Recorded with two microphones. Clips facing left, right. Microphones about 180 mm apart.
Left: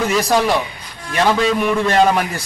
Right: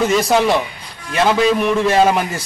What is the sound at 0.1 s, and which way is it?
A man's voice, centre (ahead or behind).